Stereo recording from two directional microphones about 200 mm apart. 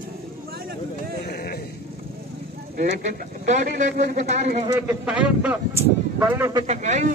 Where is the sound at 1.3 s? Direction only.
50° left (ahead or behind).